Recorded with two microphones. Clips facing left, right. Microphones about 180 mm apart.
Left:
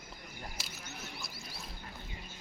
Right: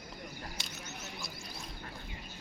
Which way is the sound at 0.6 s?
Centre (ahead or behind).